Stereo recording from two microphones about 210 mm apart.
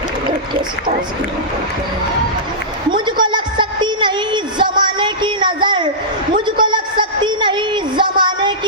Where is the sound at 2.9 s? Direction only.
20° right (ahead or behind).